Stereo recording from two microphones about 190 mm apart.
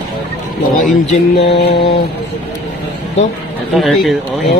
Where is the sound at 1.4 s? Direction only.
70° left (ahead or behind).